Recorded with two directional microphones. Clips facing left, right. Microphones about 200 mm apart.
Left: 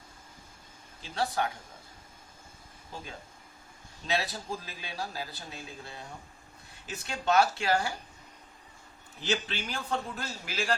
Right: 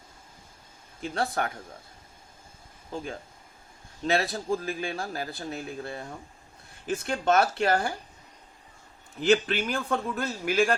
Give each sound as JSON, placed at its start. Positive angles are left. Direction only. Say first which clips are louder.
{"t": 1.0, "sound": "a man's voice", "louder": "right 2 dB", "side_deg": -55}
{"t": 4.0, "sound": "a man's voice", "louder": "right 6 dB", "side_deg": -50}
{"t": 9.3, "sound": "a man's voice", "louder": "right 9 dB", "side_deg": -55}